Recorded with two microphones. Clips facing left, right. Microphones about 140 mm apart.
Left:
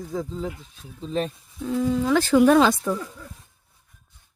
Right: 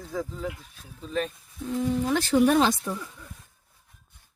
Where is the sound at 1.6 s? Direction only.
90° left.